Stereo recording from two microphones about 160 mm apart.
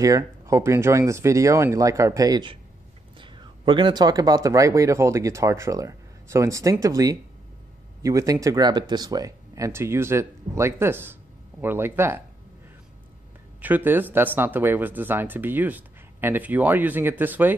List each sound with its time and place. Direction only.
0.0 s speech: 20° right (ahead or behind)
13.6 s speech: 10° right (ahead or behind)